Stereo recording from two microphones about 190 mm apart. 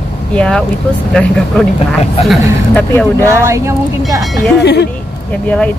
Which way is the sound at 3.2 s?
15° right (ahead or behind).